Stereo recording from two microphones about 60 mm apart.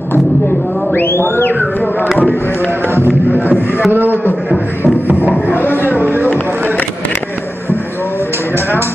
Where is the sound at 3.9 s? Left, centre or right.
Right.